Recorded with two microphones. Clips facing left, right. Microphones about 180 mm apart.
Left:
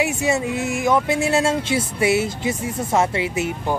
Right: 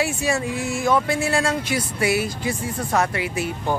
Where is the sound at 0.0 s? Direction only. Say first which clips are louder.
Left 2 dB; 20° left (ahead or behind).